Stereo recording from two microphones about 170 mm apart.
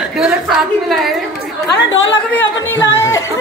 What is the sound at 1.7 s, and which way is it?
Speech, 90° left.